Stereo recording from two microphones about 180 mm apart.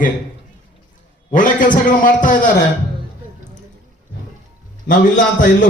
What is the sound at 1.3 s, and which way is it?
A man's voice, 45° left (ahead or behind).